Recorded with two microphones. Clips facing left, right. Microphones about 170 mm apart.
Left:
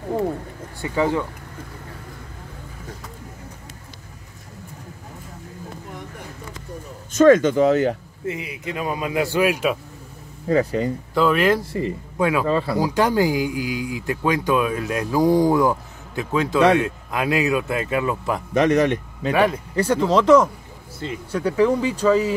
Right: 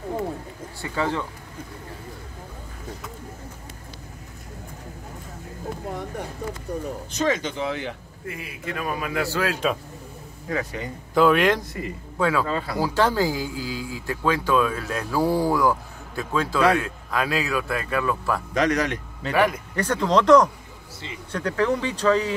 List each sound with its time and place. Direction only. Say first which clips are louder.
0.9 s speech: left 5 dB; 15° left (ahead or behind)
6.7 s speech: right 6 dB; 65° right (ahead or behind)
7.1 s speech: left 13 dB; 50° left (ahead or behind)
8.3 s a man's voice: left 5 dB; 20° left (ahead or behind)
10.5 s speech: left 9 dB; 30° left (ahead or behind)
11.1 s speech: even; centre (ahead or behind)
11.6 s speech: left 7 dB; 30° left (ahead or behind)
12.2 s speech: left 2 dB; 15° left (ahead or behind)
12.4 s a man's voice: left 6 dB; 30° left (ahead or behind)
12.7 s speech: even; 15° left (ahead or behind)
19.8 s speech: left 3 dB; 10° left (ahead or behind)